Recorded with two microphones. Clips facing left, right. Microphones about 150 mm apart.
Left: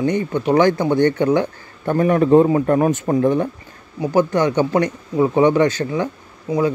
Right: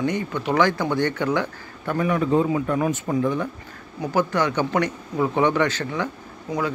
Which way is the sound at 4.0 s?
20° left (ahead or behind).